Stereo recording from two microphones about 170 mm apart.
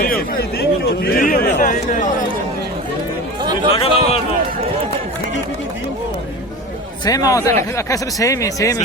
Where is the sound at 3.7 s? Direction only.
35° left (ahead or behind).